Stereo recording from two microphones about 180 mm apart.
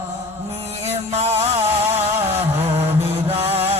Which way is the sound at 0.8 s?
35° right (ahead or behind).